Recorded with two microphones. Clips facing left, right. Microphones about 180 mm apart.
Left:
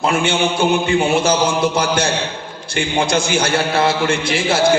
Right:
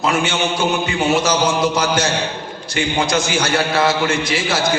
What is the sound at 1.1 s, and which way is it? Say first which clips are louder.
A man's voice: left 1 dB; 30° left (ahead or behind).